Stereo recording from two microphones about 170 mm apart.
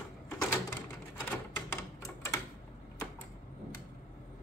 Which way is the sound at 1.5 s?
15° left (ahead or behind).